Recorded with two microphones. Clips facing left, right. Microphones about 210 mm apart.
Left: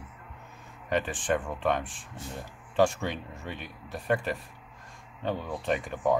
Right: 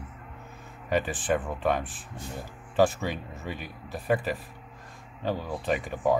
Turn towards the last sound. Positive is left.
turn(degrees=-5)  # may be behind; listen again after turning